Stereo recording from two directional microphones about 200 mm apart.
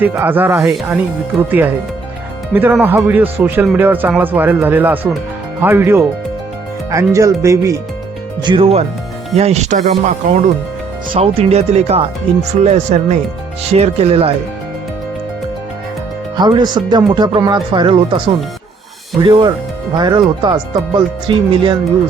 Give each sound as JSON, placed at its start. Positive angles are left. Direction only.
{"t": 0.0, "sound": "speech", "side_deg": -10}
{"t": 11.1, "sound": "speech", "side_deg": -30}
{"t": 16.4, "sound": "speech", "side_deg": -20}
{"t": 19.2, "sound": "speech", "side_deg": -20}